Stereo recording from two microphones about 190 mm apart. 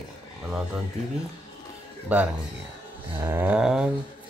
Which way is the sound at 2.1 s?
10° right (ahead or behind).